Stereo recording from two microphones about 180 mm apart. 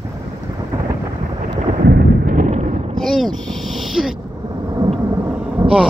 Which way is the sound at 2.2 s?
45° right (ahead or behind).